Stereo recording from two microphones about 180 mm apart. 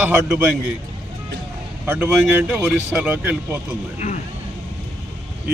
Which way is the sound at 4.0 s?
40° left (ahead or behind).